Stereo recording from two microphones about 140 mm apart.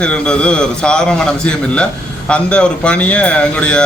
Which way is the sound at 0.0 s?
5° left (ahead or behind).